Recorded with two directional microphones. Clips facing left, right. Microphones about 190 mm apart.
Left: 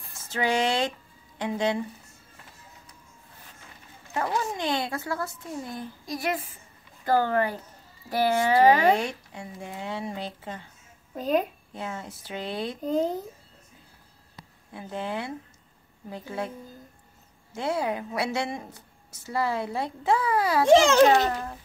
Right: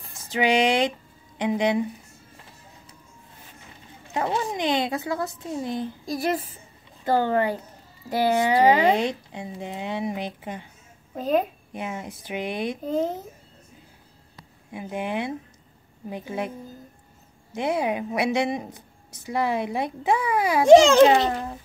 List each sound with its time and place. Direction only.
0.1 s a woman's voice: 15° right (ahead or behind)
4.1 s speech: 20° right (ahead or behind)
6.1 s a woman's voice: 35° right (ahead or behind)
7.1 s speech: 20° right (ahead or behind)
11.7 s a woman's voice: 15° right (ahead or behind)
14.7 s a woman's voice: 15° right (ahead or behind)